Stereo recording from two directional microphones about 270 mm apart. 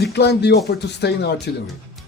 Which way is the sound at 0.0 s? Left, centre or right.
Left.